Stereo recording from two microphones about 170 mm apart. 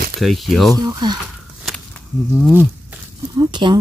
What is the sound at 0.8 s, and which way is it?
Speech, 25° right (ahead or behind).